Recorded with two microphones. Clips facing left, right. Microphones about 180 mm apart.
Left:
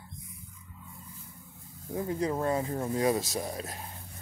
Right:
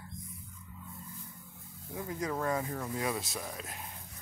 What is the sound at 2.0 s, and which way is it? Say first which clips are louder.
Speech: left 5 dB; 30° left (ahead or behind).